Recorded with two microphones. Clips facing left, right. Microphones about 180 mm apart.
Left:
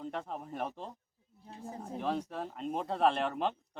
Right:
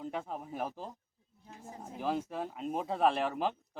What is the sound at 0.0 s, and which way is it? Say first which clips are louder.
Speech: right 1 dB; 5° right (ahead or behind).